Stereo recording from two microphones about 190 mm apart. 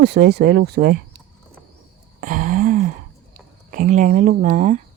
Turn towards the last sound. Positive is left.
turn(degrees=-45)  # may be behind; listen again after turning